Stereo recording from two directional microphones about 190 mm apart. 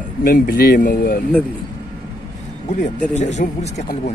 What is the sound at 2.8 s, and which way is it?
Speech, 35° left (ahead or behind).